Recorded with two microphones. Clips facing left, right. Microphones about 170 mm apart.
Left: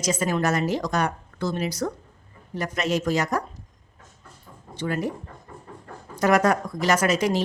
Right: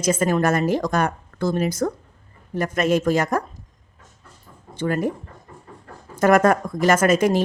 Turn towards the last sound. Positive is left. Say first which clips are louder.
# right 4 dB
turn(degrees=-50)  # may be behind; listen again after turning